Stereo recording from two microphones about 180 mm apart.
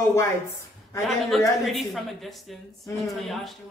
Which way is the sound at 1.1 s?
Centre (ahead or behind).